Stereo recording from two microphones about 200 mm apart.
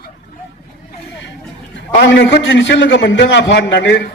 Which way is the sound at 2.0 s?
65° left (ahead or behind).